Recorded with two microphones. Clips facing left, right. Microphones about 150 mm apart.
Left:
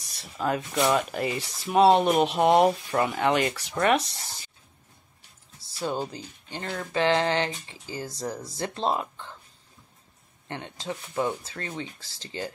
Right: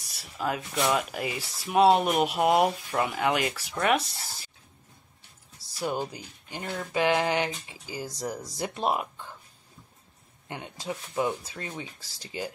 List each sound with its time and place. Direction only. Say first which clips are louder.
0.2 s speech: left 3 dB; 5° right (ahead or behind)
5.8 s speech: left 1 dB; 15° right (ahead or behind)
10.5 s speech: left 1 dB; 10° right (ahead or behind)